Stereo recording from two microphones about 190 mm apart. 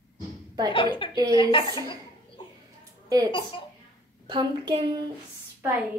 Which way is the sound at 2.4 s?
25° left (ahead or behind).